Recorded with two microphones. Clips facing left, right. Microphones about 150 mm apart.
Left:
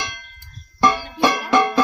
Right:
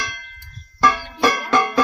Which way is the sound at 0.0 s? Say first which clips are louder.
Even; 20° left (ahead or behind).